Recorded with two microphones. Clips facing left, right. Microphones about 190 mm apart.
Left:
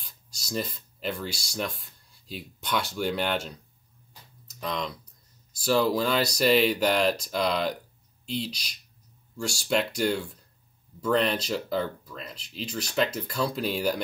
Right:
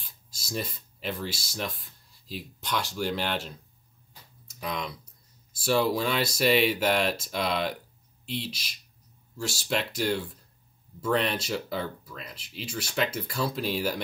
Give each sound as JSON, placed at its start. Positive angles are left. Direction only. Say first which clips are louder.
{"t": 0.0, "sound": "speech", "louder": "even", "side_deg": 0}
{"t": 4.6, "sound": "speech", "louder": "left 2 dB", "side_deg": -5}